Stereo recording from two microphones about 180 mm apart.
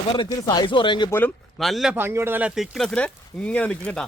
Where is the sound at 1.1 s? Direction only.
10° left (ahead or behind).